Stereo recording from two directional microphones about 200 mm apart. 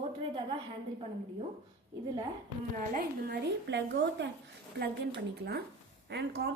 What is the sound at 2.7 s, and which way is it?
A woman's voice, 45° right (ahead or behind).